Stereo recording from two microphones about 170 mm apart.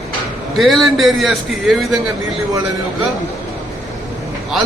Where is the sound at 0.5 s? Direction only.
Centre (ahead or behind).